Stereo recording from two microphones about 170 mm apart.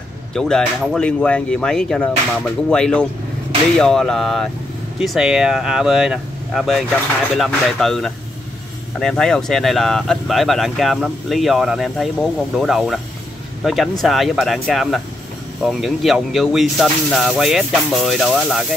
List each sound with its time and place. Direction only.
0.3 s speech: 5° left (ahead or behind)
14.0 s speech: centre (ahead or behind)